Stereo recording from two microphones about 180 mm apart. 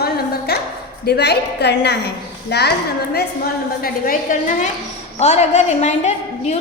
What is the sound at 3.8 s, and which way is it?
A woman's voice, 50° left (ahead or behind).